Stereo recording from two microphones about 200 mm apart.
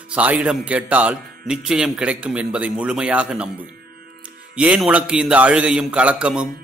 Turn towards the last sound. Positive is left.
turn(degrees=-5)  # may be behind; listen again after turning